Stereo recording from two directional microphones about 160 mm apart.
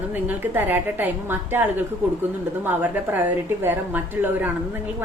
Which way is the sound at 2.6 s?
10° right (ahead or behind).